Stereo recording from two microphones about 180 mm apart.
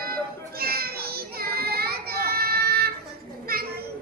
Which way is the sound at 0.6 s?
55° right (ahead or behind).